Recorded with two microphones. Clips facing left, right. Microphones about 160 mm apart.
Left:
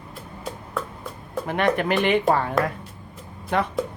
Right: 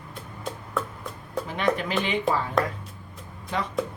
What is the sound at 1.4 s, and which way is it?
Speech, 60° left (ahead or behind).